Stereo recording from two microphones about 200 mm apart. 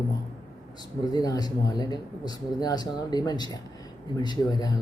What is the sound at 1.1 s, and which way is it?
Speech, 20° left (ahead or behind).